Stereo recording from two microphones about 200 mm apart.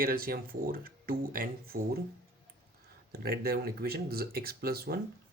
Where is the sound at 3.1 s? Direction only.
50° right (ahead or behind).